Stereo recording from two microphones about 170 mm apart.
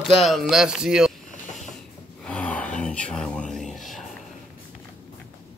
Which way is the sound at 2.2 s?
5° left (ahead or behind).